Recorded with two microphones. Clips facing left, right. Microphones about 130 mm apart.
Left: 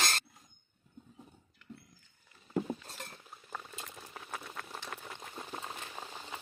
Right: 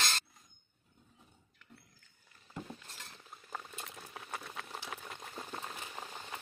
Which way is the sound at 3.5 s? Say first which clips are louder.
Even; centre (ahead or behind).